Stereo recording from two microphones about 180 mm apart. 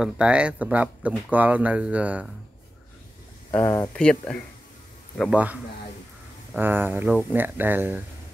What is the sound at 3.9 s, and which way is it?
Speech, 5° left (ahead or behind).